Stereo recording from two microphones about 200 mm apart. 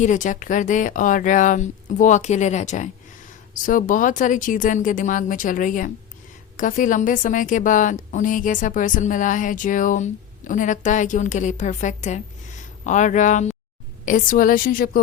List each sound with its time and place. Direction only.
0.0 s a woman's voice: 40° left (ahead or behind)